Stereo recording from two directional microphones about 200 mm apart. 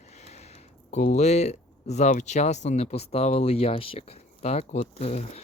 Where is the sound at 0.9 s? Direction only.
35° left (ahead or behind).